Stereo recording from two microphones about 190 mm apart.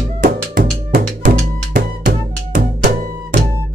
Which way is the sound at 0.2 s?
55° right (ahead or behind).